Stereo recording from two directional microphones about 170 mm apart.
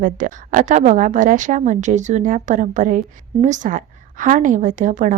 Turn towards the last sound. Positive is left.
turn(degrees=-50)  # may be behind; listen again after turning